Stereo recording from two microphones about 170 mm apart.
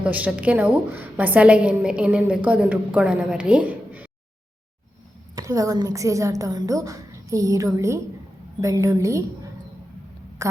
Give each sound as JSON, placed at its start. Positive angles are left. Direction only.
{"t": 0.0, "sound": "a woman's voice", "side_deg": -10}
{"t": 5.3, "sound": "a woman's voice", "side_deg": -20}
{"t": 10.4, "sound": "a woman's voice", "side_deg": -15}